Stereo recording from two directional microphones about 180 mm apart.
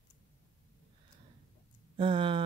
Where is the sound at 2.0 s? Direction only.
25° right (ahead or behind).